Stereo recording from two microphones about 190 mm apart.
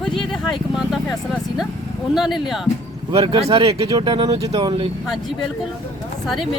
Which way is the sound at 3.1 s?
30° right (ahead or behind).